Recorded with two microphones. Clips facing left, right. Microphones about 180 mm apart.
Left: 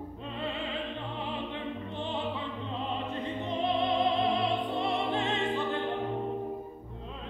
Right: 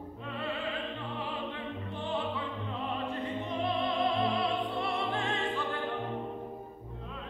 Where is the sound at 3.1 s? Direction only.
20° left (ahead or behind).